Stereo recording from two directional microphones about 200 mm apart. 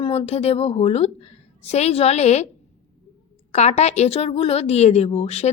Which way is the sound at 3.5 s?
35° left (ahead or behind).